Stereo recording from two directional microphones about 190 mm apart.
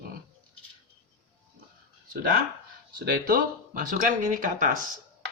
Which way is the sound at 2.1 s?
50° right (ahead or behind).